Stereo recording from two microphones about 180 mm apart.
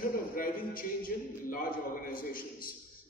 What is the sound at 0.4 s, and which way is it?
A man's voice, 50° left (ahead or behind).